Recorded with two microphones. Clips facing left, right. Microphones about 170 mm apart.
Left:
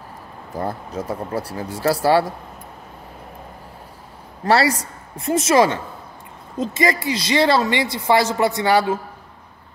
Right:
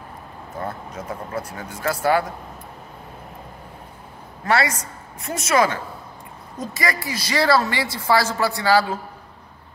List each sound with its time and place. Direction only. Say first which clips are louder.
0.6 s speech: left 5 dB; 35° left (ahead or behind)
4.5 s speech: left 4 dB; 30° left (ahead or behind)